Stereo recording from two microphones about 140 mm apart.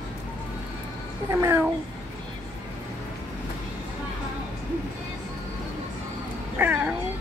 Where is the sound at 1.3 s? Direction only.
20° right (ahead or behind).